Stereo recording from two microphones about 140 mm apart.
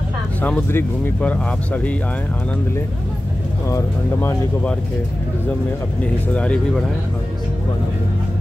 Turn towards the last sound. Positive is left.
turn(degrees=5)  # may be behind; listen again after turning